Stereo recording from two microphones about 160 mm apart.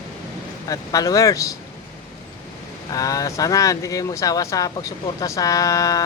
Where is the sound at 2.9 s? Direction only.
20° left (ahead or behind).